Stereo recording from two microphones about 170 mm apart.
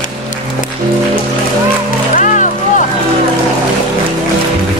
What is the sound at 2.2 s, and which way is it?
Music, 50° left (ahead or behind).